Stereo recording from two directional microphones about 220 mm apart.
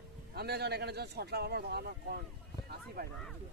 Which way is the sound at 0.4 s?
45° right (ahead or behind).